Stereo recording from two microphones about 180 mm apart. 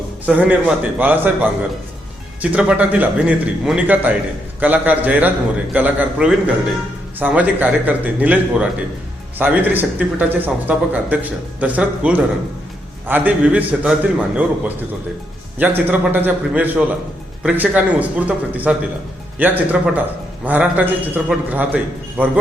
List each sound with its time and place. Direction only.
0.3 s speech: 10° right (ahead or behind)